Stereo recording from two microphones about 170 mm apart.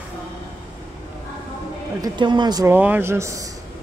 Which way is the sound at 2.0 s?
25° right (ahead or behind).